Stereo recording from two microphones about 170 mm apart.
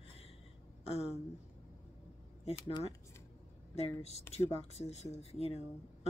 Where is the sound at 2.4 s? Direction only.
35° left (ahead or behind).